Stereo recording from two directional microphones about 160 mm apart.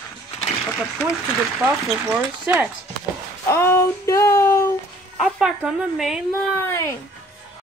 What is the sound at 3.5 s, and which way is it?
Female singing, 15° left (ahead or behind).